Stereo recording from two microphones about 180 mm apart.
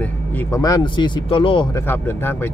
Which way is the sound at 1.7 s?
15° left (ahead or behind).